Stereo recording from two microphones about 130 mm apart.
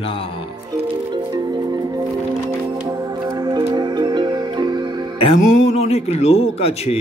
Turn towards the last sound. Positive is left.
turn(degrees=50)  # may be behind; listen again after turning